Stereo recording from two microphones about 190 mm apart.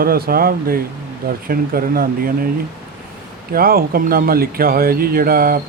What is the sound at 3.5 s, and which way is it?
Speech, 50° right (ahead or behind).